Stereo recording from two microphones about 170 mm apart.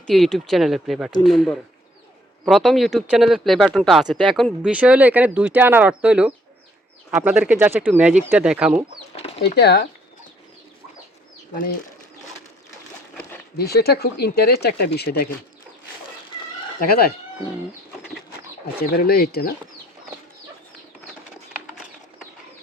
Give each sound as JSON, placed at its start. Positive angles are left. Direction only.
{"t": 0.1, "sound": "speech", "side_deg": 0}
{"t": 9.1, "sound": "bird", "side_deg": 35}
{"t": 9.4, "sound": "speech", "side_deg": 75}
{"t": 13.6, "sound": "speech", "side_deg": 70}
{"t": 16.8, "sound": "speech", "side_deg": 60}
{"t": 18.9, "sound": "speech", "side_deg": 60}